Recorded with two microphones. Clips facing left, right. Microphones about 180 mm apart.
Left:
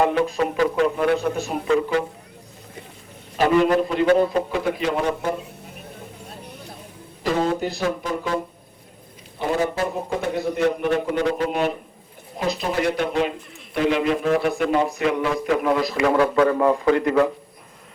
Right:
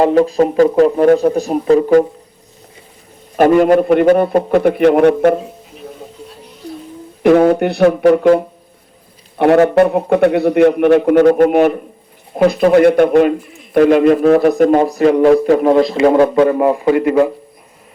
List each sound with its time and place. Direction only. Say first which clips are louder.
0.0 s a man's voice: right 9 dB; 35° right (ahead or behind)
3.3 s a man's voice: right 8 dB; 50° right (ahead or behind)
7.2 s a man's voice: right 12 dB; 65° right (ahead or behind)
9.4 s a man's voice: right 13 dB; 70° right (ahead or behind); by 17.2 s 10° right (ahead or behind)